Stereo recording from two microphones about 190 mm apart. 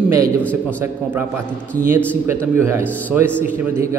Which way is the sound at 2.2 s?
15° right (ahead or behind).